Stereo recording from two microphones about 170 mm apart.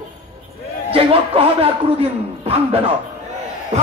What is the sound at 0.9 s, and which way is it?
A man's voice, 35° right (ahead or behind).